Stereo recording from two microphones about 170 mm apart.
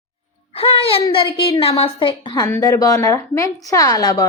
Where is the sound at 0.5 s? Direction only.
35° left (ahead or behind).